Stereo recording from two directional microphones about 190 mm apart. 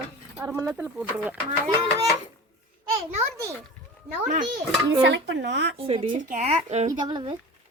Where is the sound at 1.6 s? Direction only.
15° right (ahead or behind).